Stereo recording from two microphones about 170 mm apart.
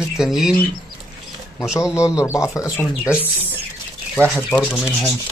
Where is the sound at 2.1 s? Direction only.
15° left (ahead or behind).